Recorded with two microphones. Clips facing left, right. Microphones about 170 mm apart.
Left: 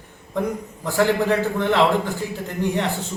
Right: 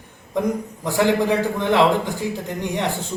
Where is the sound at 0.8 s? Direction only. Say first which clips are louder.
Right 1 dB; 15° right (ahead or behind).